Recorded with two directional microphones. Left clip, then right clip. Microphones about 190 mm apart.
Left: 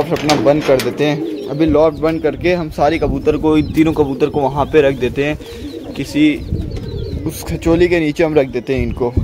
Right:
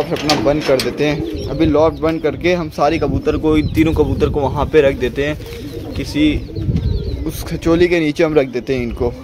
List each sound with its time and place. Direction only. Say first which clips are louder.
0.3 s speech: left 2 dB; 20° left (ahead or behind)
0.8 s speech: left 1 dB; 10° left (ahead or behind)